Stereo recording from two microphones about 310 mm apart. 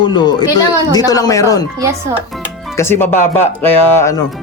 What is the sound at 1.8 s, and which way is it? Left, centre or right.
Speech, centre.